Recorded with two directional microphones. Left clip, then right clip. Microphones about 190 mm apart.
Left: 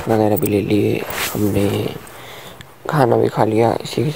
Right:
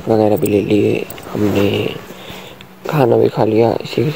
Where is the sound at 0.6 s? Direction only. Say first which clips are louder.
Right 3 dB; 55° left (ahead or behind).